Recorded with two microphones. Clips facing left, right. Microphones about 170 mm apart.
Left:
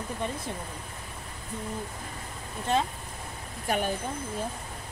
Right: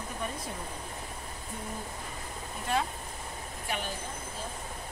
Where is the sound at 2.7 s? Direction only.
25° left (ahead or behind).